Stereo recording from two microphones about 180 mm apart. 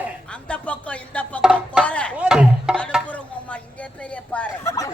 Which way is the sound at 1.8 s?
5° left (ahead or behind).